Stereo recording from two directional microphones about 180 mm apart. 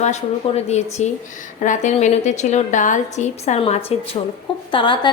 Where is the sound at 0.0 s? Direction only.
40° left (ahead or behind).